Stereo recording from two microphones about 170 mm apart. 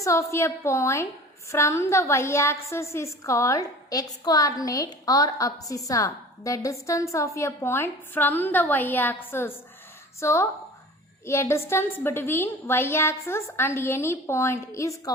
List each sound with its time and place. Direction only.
0.0 s a woman's voice: 15° left (ahead or behind)